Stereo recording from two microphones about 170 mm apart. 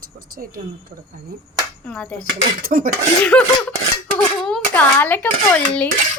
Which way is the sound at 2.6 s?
55° right (ahead or behind).